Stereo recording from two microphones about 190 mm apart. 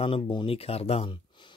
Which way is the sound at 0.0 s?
25° left (ahead or behind).